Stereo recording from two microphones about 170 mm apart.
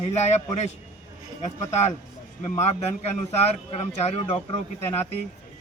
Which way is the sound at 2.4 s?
40° left (ahead or behind).